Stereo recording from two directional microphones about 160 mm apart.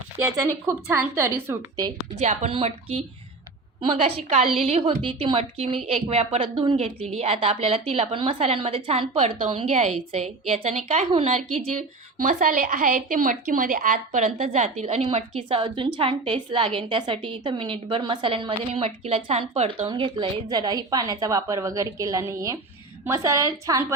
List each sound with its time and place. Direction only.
0.7 s a woman's voice: 15° right (ahead or behind)
2.1 s a woman's voice: 45° right (ahead or behind)
11.1 s a woman's voice: 35° right (ahead or behind)
12.1 s a woman's voice: 55° right (ahead or behind); by 23.8 s 20° right (ahead or behind)